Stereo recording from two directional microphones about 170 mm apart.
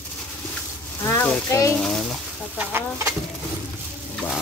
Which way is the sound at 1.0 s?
15° left (ahead or behind).